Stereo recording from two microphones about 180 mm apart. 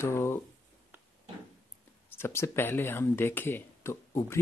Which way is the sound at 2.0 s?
15° left (ahead or behind).